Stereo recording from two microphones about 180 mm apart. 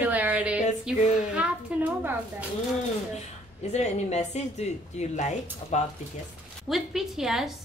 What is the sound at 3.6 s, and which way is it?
Speech, 40° left (ahead or behind).